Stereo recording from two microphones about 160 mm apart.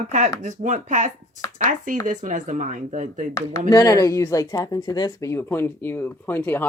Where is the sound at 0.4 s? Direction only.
50° right (ahead or behind).